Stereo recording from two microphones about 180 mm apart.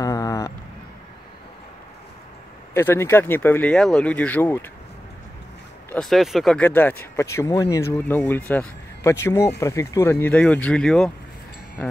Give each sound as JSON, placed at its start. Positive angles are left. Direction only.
{"t": 0.0, "sound": "a sound", "side_deg": 20}
{"t": 2.7, "sound": "speech", "side_deg": 15}
{"t": 5.9, "sound": "speech", "side_deg": 5}